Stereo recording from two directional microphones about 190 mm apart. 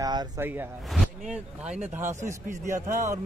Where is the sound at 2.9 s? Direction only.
15° right (ahead or behind).